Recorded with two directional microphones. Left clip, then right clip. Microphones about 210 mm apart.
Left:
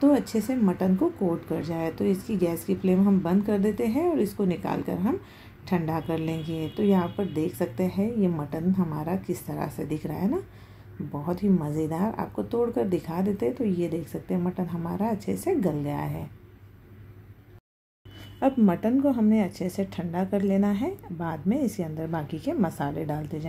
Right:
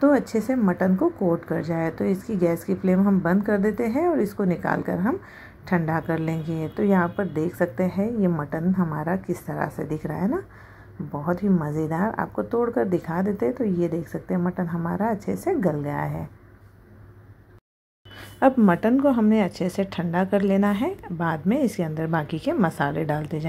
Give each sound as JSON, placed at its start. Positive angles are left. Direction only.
{"t": 0.0, "sound": "a woman's voice", "side_deg": -15}
{"t": 18.1, "sound": "a woman's voice", "side_deg": -15}